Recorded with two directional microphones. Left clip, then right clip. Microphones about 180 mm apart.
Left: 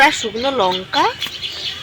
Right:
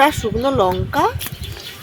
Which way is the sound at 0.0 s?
50° right (ahead or behind).